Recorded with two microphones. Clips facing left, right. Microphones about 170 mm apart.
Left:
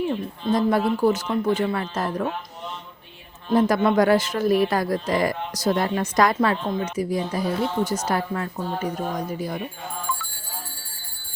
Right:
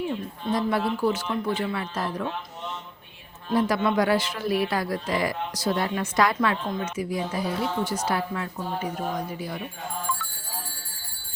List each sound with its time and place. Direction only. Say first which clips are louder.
0.1 s speech: left 4 dB; 45° left (ahead or behind)
3.5 s a woman's voice: left 4 dB; 45° left (ahead or behind)